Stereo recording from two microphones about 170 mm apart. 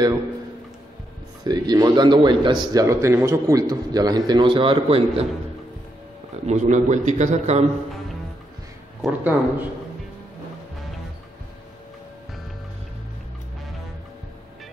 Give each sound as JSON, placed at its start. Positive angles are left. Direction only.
{"t": 1.4, "sound": "a man's voice", "side_deg": -25}
{"t": 6.4, "sound": "a man's voice", "side_deg": -45}
{"t": 9.0, "sound": "speech", "side_deg": -10}